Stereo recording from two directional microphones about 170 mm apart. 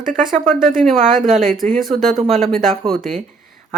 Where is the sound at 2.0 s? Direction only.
Centre (ahead or behind).